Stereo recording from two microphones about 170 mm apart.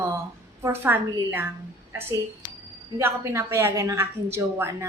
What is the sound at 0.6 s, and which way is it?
A woman's voice, 15° right (ahead or behind).